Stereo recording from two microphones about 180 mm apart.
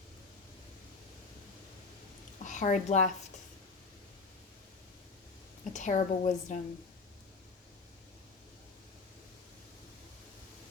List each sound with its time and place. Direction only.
2.4 s a woman's voice: 45° left (ahead or behind)
5.7 s a woman's voice: 45° left (ahead or behind)